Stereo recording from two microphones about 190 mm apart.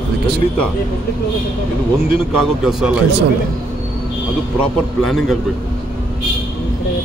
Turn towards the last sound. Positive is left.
turn(degrees=0)  # may be behind; listen again after turning